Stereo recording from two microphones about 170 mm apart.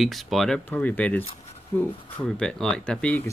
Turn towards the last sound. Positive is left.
turn(degrees=10)  # may be behind; listen again after turning